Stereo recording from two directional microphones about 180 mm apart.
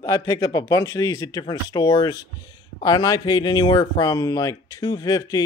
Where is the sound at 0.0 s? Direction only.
20° left (ahead or behind).